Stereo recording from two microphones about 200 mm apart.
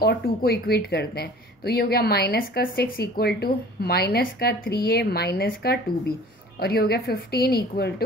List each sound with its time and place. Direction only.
0.0 s speech: 50° left (ahead or behind)